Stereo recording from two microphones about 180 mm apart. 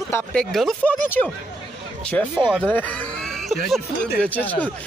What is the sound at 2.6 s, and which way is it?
Speech, 10° left (ahead or behind).